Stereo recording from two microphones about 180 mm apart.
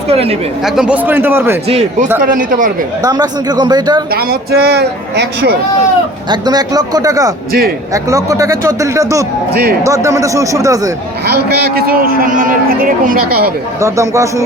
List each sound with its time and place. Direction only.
0.1 s speech: 35° right (ahead or behind)
0.6 s a man's voice: 5° right (ahead or behind)
1.6 s speech: 40° right (ahead or behind)
2.2 s speech: 50° right (ahead or behind)
3.0 s speech: 20° right (ahead or behind)
4.1 s a man's voice: 60° right (ahead or behind)
6.3 s a man's voice: 20° right (ahead or behind)
9.5 s a man's voice: 60° right (ahead or behind)
9.8 s a man's voice: 15° right (ahead or behind)
11.3 s a man's voice: 60° right (ahead or behind)
13.8 s a man's voice: 15° right (ahead or behind)